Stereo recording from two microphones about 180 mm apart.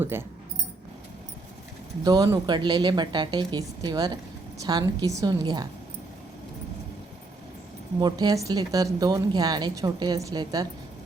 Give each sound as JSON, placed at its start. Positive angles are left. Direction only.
{"t": 0.0, "sound": "speech", "side_deg": -10}
{"t": 2.0, "sound": "a woman's voice", "side_deg": -20}
{"t": 7.9, "sound": "a woman's voice", "side_deg": -20}